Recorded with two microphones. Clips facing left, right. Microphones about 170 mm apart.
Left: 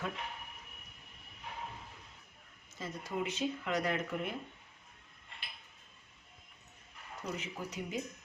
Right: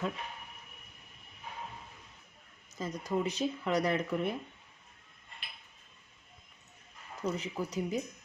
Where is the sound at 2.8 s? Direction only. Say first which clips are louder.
Right 5 dB; 35° right (ahead or behind).